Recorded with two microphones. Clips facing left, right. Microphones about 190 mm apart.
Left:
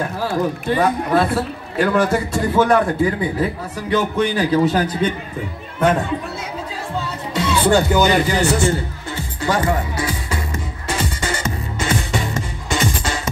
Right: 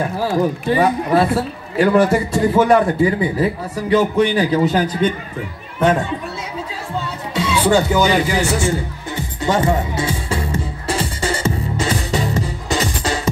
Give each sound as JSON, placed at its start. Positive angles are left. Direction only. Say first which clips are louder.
{"t": 0.7, "sound": "a man's voice", "louder": "right 1 dB", "side_deg": -10}
{"t": 7.3, "sound": "music", "louder": "even", "side_deg": 0}
{"t": 8.0, "sound": "a man's voice", "louder": "even", "side_deg": 0}
{"t": 9.1, "sound": "music", "louder": "right 2 dB", "side_deg": -20}